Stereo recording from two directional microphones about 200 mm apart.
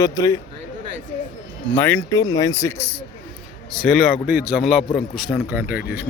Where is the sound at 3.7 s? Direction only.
Centre (ahead or behind).